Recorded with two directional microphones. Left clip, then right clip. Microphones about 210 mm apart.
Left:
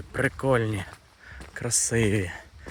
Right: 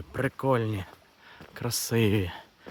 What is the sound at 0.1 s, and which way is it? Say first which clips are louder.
Speech: left 3 dB; centre (ahead or behind).